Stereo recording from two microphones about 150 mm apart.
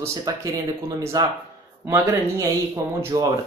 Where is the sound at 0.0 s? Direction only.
20° right (ahead or behind).